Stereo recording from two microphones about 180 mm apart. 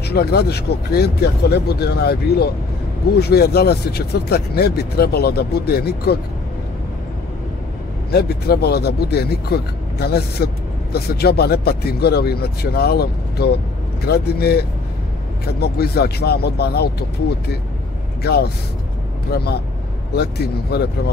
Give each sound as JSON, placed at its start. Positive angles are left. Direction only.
{"t": 0.1, "sound": "speech", "side_deg": 60}
{"t": 8.1, "sound": "speech", "side_deg": 65}
{"t": 19.3, "sound": "speech", "side_deg": 65}